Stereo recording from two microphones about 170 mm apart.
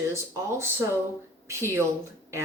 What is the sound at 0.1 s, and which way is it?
Speech, 15° right (ahead or behind).